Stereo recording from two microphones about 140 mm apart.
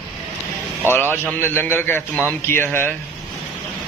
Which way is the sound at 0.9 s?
15° left (ahead or behind).